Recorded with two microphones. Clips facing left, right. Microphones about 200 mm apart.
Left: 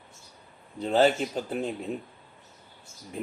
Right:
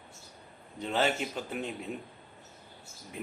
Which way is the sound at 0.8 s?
35° left (ahead or behind).